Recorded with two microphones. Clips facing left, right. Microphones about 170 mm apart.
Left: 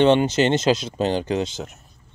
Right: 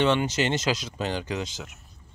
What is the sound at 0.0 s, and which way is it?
Speech, 25° left (ahead or behind).